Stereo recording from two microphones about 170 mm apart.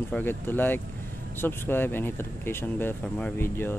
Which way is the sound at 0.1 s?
10° left (ahead or behind).